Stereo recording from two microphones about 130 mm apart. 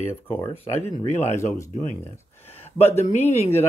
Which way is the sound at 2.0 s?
20° left (ahead or behind).